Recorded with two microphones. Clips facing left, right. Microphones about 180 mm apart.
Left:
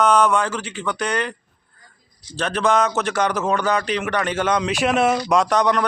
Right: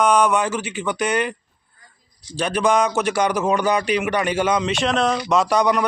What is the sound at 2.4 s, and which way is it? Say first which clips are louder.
A man's voice: right 1 dB; 10° right (ahead or behind).